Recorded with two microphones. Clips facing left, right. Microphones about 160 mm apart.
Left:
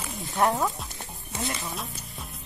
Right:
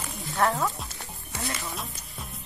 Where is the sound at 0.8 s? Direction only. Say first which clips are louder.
Left 1 dB; 20° left (ahead or behind).